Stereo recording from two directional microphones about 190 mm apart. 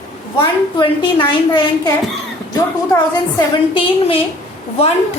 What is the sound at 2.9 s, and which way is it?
A woman's voice, 25° left (ahead or behind).